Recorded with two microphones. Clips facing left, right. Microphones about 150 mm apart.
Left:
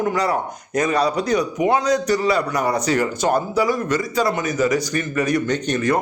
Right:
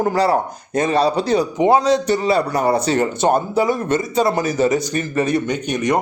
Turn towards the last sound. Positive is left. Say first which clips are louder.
# right 1 dB
turn(degrees=-20)  # may be behind; listen again after turning